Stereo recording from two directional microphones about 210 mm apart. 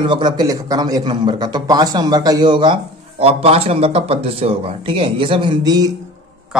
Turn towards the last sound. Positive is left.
turn(degrees=-20)  # may be behind; listen again after turning